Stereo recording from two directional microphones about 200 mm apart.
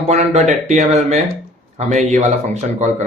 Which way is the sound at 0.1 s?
35° right (ahead or behind).